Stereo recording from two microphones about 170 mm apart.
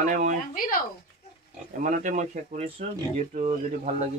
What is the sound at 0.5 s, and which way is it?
Speech, 55° left (ahead or behind).